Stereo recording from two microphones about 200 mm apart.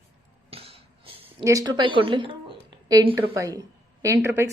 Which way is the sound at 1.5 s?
20° right (ahead or behind).